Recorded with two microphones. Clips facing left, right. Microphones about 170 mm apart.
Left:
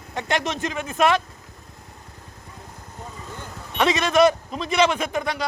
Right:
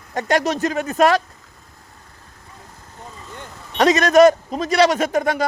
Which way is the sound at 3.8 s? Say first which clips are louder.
Right 6 dB; 40° right (ahead or behind).